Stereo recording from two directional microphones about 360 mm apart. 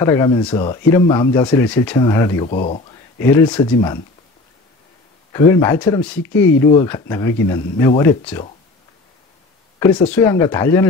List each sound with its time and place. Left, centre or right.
0.0 s speech: centre
3.2 s speech: centre
5.3 s speech: centre
9.8 s speech: centre